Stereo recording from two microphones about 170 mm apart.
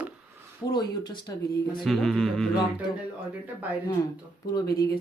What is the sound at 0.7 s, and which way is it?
Speech, 25° left (ahead or behind).